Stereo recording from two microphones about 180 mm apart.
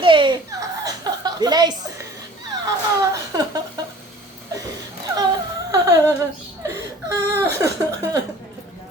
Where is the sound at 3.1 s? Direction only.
20° right (ahead or behind).